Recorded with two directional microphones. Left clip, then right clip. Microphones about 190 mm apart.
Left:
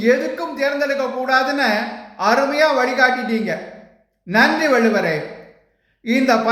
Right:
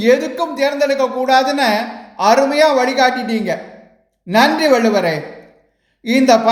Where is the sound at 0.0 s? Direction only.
35° right (ahead or behind).